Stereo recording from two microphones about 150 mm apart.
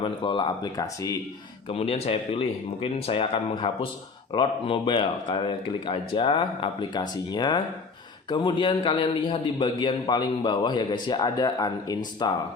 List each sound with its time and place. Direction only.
0.0 s speech: 35° left (ahead or behind)
1.6 s a man's voice: 40° left (ahead or behind)